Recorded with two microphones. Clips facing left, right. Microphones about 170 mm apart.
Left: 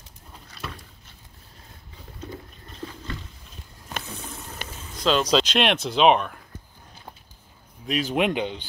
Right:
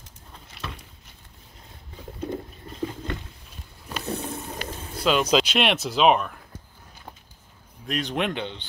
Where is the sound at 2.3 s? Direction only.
25° right (ahead or behind).